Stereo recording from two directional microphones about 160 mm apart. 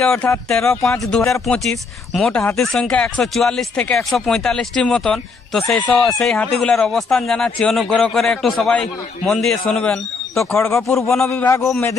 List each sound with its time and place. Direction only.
0.0 s speech: 5° left (ahead or behind)
0.6 s speech: 15° left (ahead or behind)
1.3 s speech: centre (ahead or behind)
10.3 s speech: 15° left (ahead or behind)